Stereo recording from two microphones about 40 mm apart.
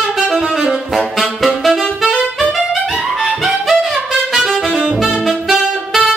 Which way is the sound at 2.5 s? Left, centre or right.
Centre.